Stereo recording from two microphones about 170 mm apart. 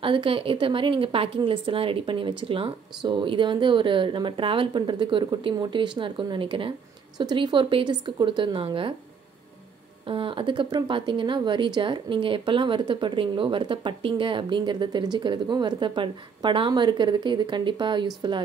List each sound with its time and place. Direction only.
0.0 s speech: 30° right (ahead or behind)
10.0 s speech: 30° right (ahead or behind)